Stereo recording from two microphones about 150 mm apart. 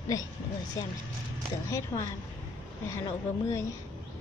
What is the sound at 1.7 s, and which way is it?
Speech, 20° left (ahead or behind).